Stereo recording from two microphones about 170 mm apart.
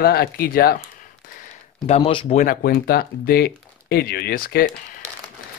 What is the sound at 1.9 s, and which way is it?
Speech, 30° left (ahead or behind).